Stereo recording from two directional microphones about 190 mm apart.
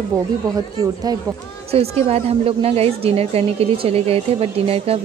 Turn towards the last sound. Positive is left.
turn(degrees=-30)  # may be behind; listen again after turning